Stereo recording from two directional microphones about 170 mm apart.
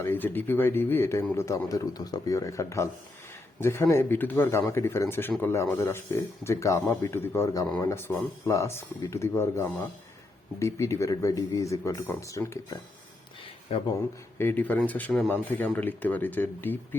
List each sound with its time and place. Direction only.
0.0 s speech: 10° left (ahead or behind)
13.7 s speech: 35° left (ahead or behind)
14.3 s speech: 10° left (ahead or behind)